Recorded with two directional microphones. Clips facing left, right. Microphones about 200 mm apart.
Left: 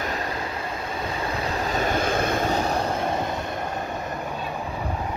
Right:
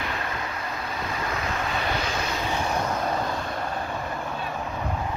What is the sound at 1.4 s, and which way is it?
Vehicle, 35° left (ahead or behind).